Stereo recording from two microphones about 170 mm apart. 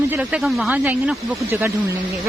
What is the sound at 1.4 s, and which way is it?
Speech, 15° right (ahead or behind).